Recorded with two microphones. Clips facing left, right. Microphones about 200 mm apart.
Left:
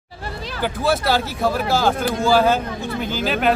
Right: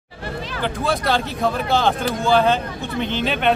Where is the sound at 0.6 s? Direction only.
5° left (ahead or behind).